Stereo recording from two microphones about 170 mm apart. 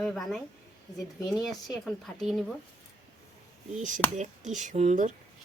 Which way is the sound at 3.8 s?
45° right (ahead or behind).